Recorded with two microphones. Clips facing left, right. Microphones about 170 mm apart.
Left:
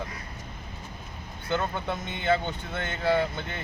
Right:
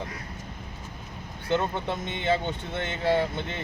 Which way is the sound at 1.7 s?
25° right (ahead or behind).